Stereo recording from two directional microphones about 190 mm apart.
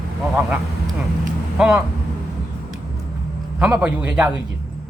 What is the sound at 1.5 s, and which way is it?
Speech, 5° right (ahead or behind).